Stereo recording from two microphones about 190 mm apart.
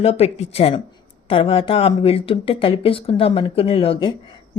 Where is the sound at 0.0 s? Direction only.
35° left (ahead or behind).